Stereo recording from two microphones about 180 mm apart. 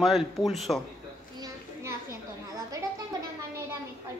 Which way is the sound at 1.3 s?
15° right (ahead or behind).